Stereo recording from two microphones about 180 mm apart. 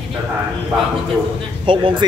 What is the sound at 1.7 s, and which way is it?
Speech, 30° right (ahead or behind).